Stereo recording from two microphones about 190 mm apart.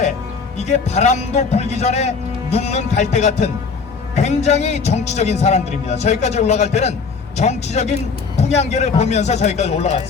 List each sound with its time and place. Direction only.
0.5 s a man's voice: 35° left (ahead or behind)